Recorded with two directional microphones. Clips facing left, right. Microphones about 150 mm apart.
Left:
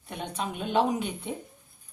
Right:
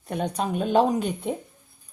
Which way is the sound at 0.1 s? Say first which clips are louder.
Right 7 dB; 40° right (ahead or behind).